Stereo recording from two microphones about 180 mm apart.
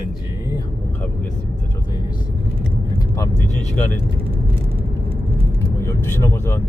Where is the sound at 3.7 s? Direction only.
10° left (ahead or behind).